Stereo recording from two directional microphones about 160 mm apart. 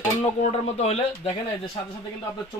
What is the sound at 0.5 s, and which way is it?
Speech, 40° left (ahead or behind).